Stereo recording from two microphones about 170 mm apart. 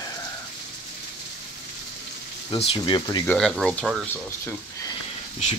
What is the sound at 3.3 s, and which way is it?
Speech, centre (ahead or behind).